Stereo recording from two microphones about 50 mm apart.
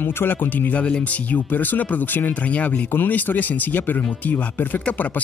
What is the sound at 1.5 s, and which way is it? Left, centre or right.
Speech, left.